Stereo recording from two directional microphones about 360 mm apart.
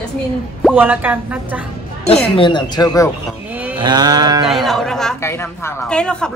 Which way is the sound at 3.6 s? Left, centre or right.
Centre.